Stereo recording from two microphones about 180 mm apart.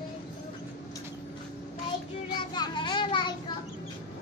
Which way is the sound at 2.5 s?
25° left (ahead or behind).